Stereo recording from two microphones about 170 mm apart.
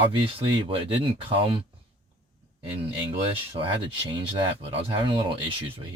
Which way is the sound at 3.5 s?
30° right (ahead or behind).